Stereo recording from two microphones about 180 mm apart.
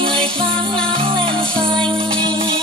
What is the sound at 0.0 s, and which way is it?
Music, 30° right (ahead or behind).